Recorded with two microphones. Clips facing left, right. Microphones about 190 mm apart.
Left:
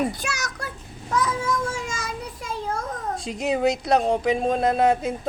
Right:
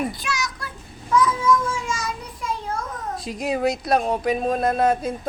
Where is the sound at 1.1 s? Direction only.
40° left (ahead or behind).